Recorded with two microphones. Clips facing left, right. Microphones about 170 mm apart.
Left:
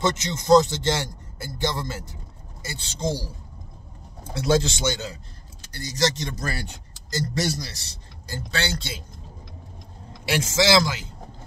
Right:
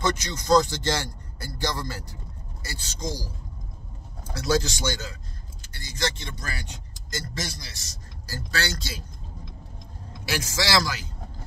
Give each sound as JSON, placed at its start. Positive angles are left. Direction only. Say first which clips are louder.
{"t": 0.0, "sound": "a man's voice", "louder": "left 2 dB", "side_deg": 20}
{"t": 5.9, "sound": "speech", "louder": "left 6 dB", "side_deg": 40}
{"t": 10.2, "sound": "speech", "louder": "left 6 dB", "side_deg": 25}